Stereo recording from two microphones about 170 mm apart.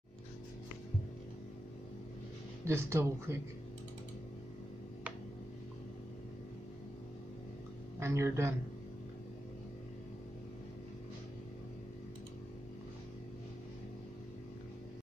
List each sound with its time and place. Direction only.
2.6 s speech: 15° right (ahead or behind)
8.0 s speech: 15° right (ahead or behind)